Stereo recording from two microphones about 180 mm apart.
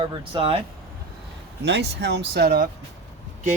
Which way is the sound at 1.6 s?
70° right (ahead or behind).